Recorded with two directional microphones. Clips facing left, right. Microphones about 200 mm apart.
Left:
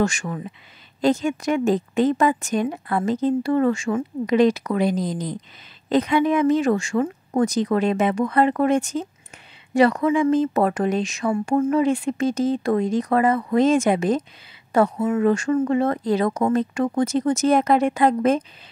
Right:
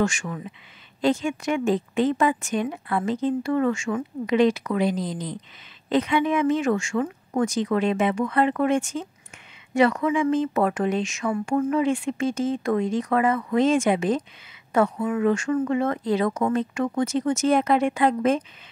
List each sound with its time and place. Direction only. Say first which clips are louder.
0.0 s a woman's voice: left 2 dB; 40° left (ahead or behind)
11.7 s a woman's voice: left 3 dB; 40° left (ahead or behind)
14.7 s a woman's voice: left 3 dB; 30° left (ahead or behind)